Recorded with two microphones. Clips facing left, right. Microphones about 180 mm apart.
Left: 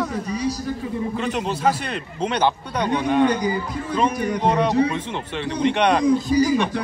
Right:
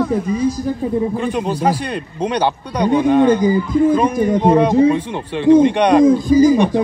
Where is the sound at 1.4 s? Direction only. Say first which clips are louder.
Right 4 dB; 10° right (ahead or behind).